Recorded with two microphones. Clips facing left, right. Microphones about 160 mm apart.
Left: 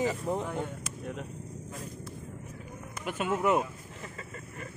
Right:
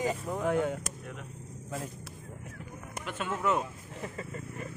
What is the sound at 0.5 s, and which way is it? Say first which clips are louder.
Speech: right 7 dB; 90° right.